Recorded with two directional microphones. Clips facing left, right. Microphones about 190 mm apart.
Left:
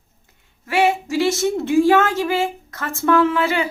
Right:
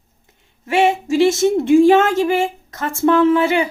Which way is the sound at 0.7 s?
25° right (ahead or behind).